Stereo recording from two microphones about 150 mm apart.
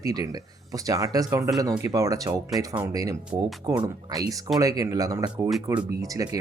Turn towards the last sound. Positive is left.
turn(degrees=-25)  # may be behind; listen again after turning